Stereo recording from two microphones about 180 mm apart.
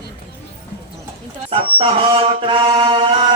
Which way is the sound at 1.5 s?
30° right (ahead or behind).